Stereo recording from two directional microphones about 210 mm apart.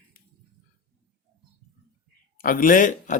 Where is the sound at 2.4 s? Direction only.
40° left (ahead or behind).